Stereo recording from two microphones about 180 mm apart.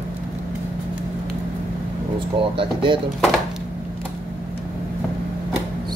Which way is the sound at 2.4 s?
30° right (ahead or behind).